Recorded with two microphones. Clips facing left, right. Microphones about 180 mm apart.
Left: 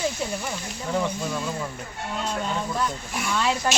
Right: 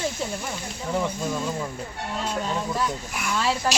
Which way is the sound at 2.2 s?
5° right (ahead or behind).